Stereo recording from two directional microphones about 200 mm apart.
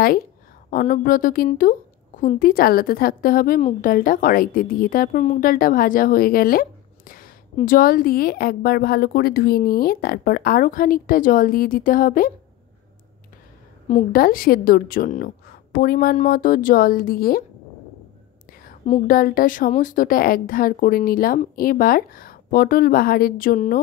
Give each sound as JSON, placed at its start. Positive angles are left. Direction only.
{"t": 0.7, "sound": "a woman's voice", "side_deg": 40}
{"t": 13.8, "sound": "a woman's voice", "side_deg": 40}
{"t": 18.5, "sound": "a woman's voice", "side_deg": 45}